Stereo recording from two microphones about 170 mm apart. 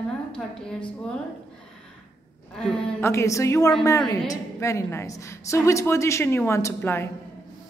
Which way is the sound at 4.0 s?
5° left (ahead or behind).